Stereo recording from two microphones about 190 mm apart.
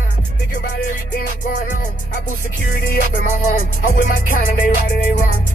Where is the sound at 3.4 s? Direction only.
45° left (ahead or behind).